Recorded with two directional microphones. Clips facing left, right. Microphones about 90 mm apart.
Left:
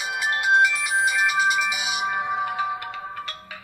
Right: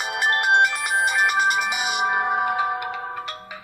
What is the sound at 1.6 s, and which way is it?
Music, 50° right (ahead or behind).